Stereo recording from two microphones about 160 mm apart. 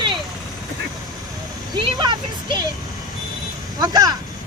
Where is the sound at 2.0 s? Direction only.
30° right (ahead or behind).